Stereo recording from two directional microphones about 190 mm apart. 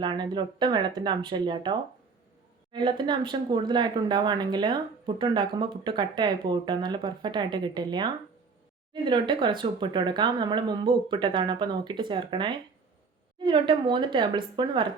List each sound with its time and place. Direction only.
0.0 s speech: 25° right (ahead or behind)